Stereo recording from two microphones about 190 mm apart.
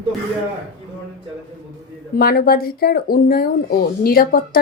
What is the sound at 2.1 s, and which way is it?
Speech, 50° left (ahead or behind).